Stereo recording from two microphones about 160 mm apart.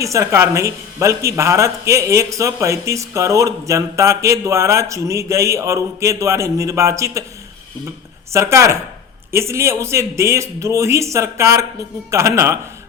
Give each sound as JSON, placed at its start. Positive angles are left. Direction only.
{"t": 0.0, "sound": "speech", "side_deg": -20}
{"t": 8.3, "sound": "speech", "side_deg": -15}